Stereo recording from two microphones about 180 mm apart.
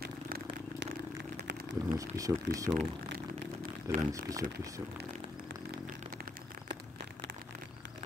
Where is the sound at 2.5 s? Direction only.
65° right (ahead or behind).